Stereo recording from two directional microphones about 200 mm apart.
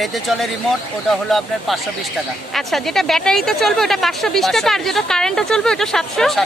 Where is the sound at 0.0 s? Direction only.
Centre (ahead or behind).